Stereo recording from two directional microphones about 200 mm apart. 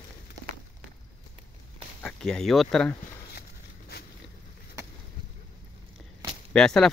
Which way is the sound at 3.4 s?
50° left (ahead or behind).